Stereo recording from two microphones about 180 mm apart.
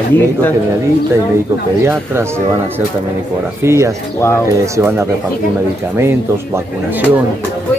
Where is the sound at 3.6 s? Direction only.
15° right (ahead or behind).